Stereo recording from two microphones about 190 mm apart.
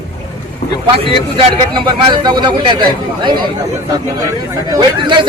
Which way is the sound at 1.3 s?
25° right (ahead or behind).